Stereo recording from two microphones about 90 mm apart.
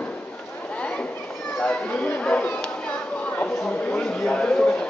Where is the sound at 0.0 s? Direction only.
15° left (ahead or behind).